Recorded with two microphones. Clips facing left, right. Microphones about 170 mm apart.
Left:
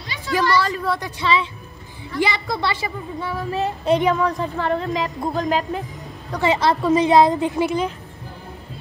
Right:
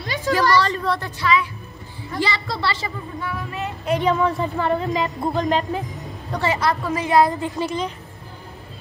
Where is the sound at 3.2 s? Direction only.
30° left (ahead or behind).